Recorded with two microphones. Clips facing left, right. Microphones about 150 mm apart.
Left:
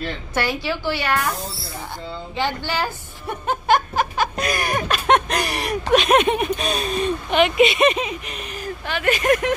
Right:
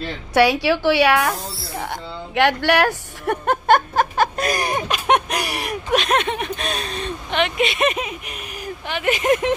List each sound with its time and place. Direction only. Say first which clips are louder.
0.3 s a woman's voice: right 9 dB; 75° right (ahead or behind); by 4.6 s 45° right (ahead or behind)
4.6 s a sound: left 3 dB; 20° right (ahead or behind)
5.9 s speech: left 4 dB; 10° left (ahead or behind); by 9.6 s 20° right (ahead or behind)